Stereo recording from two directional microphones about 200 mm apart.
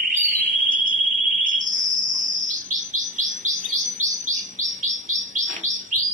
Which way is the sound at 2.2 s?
40° right (ahead or behind).